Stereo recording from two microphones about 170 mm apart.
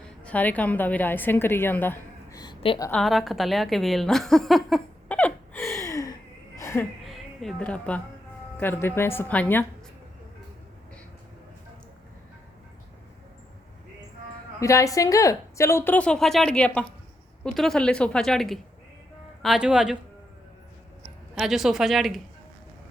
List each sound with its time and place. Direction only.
0.3 s a woman's voice: 10° left (ahead or behind)
2.4 s a sound: 25° left (ahead or behind)
2.9 s a woman's voice: centre (ahead or behind)
5.8 s gasp: 20° left (ahead or behind)
6.6 s a sound: 15° left (ahead or behind)
7.0 s a sound: centre (ahead or behind)
8.5 s a woman's voice: 15° left (ahead or behind)
14.6 s a woman's voice: 20° left (ahead or behind); by 20.0 s 5° right (ahead or behind)
21.3 s a woman's voice: centre (ahead or behind)